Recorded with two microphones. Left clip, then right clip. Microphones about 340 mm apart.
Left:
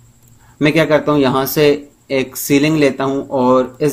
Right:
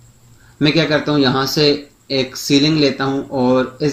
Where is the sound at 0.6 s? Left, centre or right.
Left.